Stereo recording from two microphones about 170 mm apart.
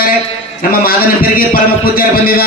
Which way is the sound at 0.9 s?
60° left (ahead or behind).